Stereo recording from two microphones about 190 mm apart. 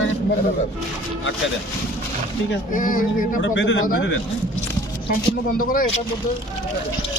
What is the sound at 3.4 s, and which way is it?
Speech, 75° left (ahead or behind).